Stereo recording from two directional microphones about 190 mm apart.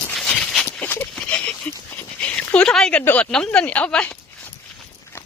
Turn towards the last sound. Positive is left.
turn(degrees=5)  # may be behind; listen again after turning